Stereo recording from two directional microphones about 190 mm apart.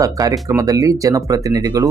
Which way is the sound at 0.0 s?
20° right (ahead or behind).